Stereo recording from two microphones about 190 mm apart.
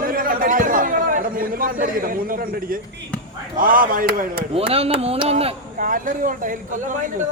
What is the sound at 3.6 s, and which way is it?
Speech, 45° right (ahead or behind).